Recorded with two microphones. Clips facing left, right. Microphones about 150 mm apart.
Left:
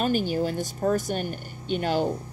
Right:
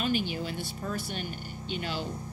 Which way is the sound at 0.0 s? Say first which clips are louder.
Left 6 dB; 45° left (ahead or behind).